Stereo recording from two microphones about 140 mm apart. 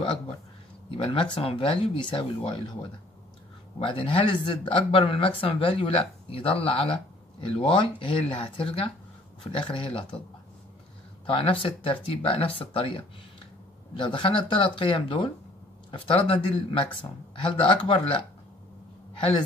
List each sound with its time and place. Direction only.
0.8 s speech: 40° left (ahead or behind)
11.2 s speech: 40° left (ahead or behind)
19.1 s speech: 40° left (ahead or behind)